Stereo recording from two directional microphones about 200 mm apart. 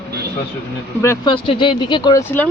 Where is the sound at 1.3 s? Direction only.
25° left (ahead or behind).